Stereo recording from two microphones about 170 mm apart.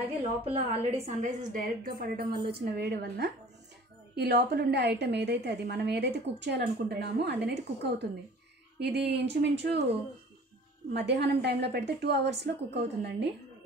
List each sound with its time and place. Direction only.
0.0 s a woman's voice: 35° right (ahead or behind); by 9.8 s 80° right
10.9 s a woman's voice: 75° right (ahead or behind)